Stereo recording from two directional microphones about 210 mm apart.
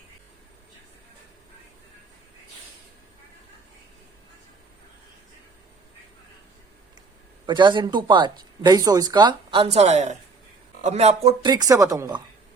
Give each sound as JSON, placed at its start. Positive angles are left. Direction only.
{"t": 7.4, "sound": "speech", "side_deg": -20}